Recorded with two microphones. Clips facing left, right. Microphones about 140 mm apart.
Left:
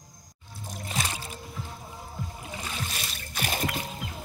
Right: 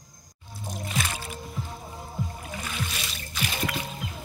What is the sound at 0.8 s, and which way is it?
Music, 35° left (ahead or behind).